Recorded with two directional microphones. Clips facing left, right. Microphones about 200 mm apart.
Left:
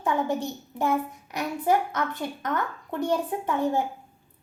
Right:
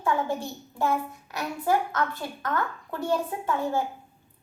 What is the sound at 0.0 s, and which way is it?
A child's voice, 20° left (ahead or behind).